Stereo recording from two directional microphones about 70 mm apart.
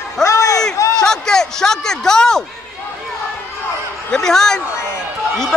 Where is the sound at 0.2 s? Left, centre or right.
Left.